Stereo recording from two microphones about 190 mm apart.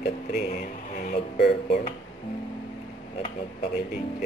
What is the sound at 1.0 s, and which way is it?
Speech, 55° left (ahead or behind).